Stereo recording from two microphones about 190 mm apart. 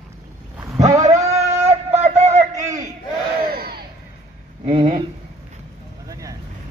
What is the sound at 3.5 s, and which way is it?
Crowd, 55° right (ahead or behind).